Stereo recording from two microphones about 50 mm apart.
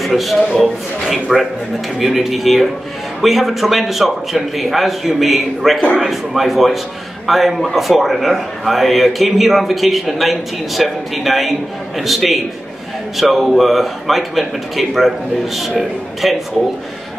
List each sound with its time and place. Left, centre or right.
0.0 s a man's voice: centre